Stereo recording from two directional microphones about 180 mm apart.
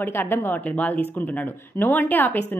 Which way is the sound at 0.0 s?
10° left (ahead or behind).